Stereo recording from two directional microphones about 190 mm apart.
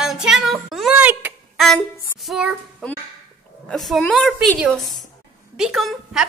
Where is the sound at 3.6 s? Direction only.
Centre (ahead or behind).